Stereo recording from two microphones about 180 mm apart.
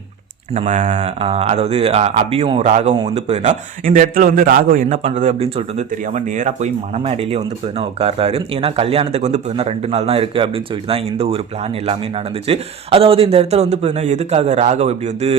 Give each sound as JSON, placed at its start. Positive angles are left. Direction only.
{"t": 0.5, "sound": "a man's voice", "side_deg": -40}
{"t": 12.5, "sound": "a man's voice", "side_deg": -30}